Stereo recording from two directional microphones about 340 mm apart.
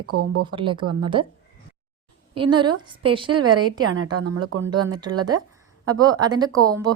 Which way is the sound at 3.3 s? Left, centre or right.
Right.